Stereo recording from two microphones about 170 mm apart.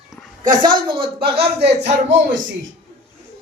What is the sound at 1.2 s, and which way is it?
Speech, 70° right (ahead or behind).